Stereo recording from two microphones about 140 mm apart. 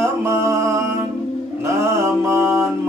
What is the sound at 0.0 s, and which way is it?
Mantra, 20° right (ahead or behind).